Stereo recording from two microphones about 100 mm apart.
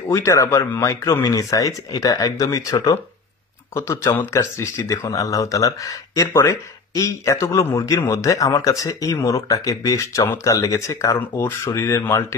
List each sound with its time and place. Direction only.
0.1 s speech: 30° left (ahead or behind)